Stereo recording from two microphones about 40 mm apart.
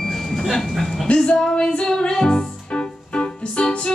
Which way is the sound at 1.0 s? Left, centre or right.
Centre.